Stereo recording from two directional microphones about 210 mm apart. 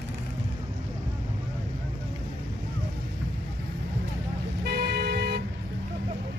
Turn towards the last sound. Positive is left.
turn(degrees=-50)  # may be behind; listen again after turning